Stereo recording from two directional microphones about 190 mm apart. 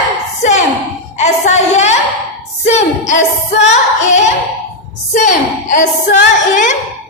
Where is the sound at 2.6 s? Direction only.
40° left (ahead or behind).